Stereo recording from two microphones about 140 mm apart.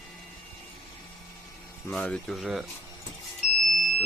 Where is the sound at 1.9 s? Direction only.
5° left (ahead or behind).